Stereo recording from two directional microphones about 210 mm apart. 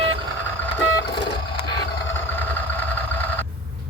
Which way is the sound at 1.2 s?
20° left (ahead or behind).